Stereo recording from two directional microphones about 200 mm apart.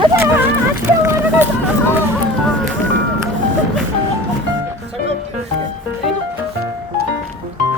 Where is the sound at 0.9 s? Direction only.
10° right (ahead or behind).